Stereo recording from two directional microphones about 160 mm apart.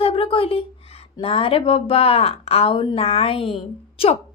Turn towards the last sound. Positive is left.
turn(degrees=35)  # may be behind; listen again after turning